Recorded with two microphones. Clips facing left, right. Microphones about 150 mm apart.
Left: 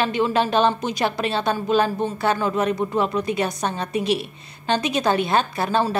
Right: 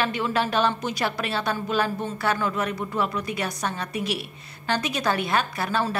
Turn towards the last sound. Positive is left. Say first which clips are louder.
# left 4 dB
turn(degrees=25)  # may be behind; listen again after turning